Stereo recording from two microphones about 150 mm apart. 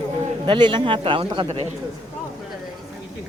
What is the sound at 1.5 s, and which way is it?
Speech, 45° right (ahead or behind).